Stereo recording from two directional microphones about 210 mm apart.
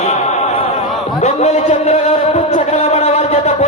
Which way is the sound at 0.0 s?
30° left (ahead or behind).